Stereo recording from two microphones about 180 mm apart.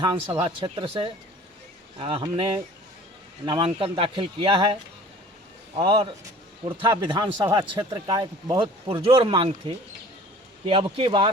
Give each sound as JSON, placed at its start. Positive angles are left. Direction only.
{"t": 0.0, "sound": "speech", "side_deg": -25}